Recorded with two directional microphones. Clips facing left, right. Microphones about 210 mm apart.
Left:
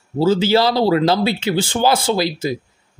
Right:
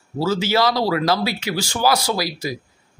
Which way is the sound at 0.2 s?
30° left (ahead or behind).